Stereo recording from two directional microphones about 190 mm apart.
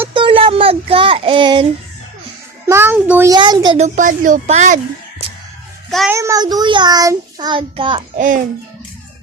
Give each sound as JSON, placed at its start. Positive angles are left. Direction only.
{"t": 0.1, "sound": "a sound", "side_deg": -25}
{"t": 2.6, "sound": "a child's voice", "side_deg": -15}
{"t": 3.3, "sound": "child singing", "side_deg": -20}
{"t": 3.8, "sound": "speech", "side_deg": -40}
{"t": 6.1, "sound": "child singing", "side_deg": -15}
{"t": 8.1, "sound": "a child's voice", "side_deg": -45}